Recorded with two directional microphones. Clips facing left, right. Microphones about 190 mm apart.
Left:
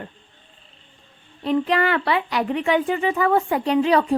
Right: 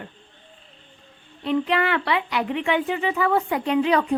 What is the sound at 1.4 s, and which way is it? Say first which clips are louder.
A woman's voice: left 2 dB; 40° left (ahead or behind).